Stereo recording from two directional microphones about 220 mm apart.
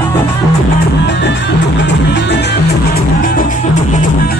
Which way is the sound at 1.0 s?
50° left (ahead or behind).